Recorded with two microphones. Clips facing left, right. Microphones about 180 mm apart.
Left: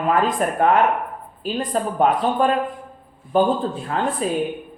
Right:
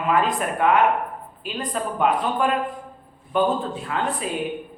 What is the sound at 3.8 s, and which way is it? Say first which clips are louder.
Speech: left 4 dB; 35° left (ahead or behind).